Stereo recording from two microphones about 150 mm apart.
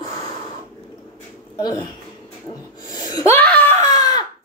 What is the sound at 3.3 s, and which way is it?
Screaming, 10° left (ahead or behind).